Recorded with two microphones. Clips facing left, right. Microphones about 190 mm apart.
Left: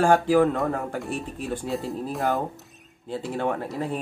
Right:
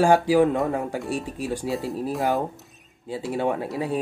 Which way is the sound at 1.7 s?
Centre (ahead or behind).